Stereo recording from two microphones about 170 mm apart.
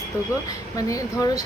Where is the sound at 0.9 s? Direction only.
20° left (ahead or behind).